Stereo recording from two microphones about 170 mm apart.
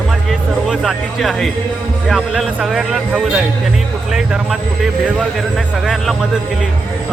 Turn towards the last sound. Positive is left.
turn(degrees=0)  # may be behind; listen again after turning